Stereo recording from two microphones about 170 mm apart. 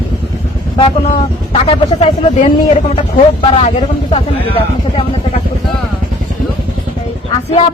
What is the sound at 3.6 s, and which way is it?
Speech, 35° left (ahead or behind).